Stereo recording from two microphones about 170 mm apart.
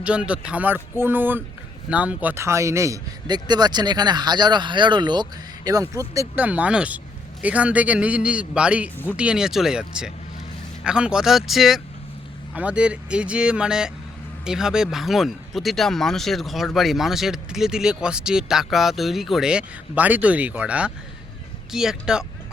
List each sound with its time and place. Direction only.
0.0 s a man's voice: 5° right (ahead or behind)